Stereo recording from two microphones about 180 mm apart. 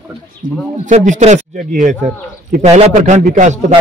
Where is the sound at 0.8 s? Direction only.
45° right (ahead or behind).